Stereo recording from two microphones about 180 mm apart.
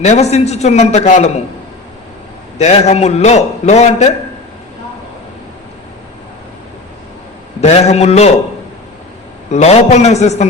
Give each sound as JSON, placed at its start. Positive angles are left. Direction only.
{"t": 0.0, "sound": "a man's voice", "side_deg": 40}
{"t": 2.6, "sound": "a man's voice", "side_deg": 40}
{"t": 7.6, "sound": "a man's voice", "side_deg": 40}
{"t": 9.5, "sound": "a man's voice", "side_deg": 35}